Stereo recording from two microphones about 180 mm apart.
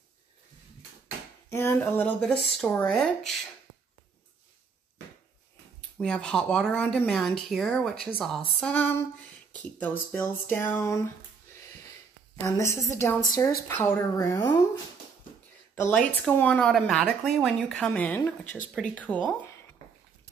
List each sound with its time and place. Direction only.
1.5 s speech: 15° left (ahead or behind)
5.9 s speech: 5° left (ahead or behind)
12.4 s speech: 15° left (ahead or behind)
15.7 s speech: 5° left (ahead or behind)